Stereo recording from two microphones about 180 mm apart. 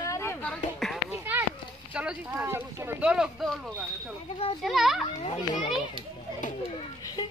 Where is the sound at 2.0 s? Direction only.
10° right (ahead or behind).